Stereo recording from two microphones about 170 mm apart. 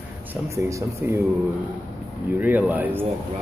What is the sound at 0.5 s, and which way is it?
Speech, 15° right (ahead or behind).